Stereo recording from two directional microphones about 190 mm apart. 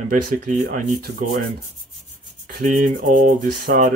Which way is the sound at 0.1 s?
45° right (ahead or behind).